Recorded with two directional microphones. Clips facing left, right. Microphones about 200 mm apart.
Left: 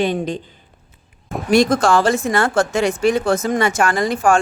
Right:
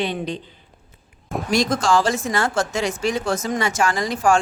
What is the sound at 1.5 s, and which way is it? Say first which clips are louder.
Speech: left 5 dB; 60° left (ahead or behind).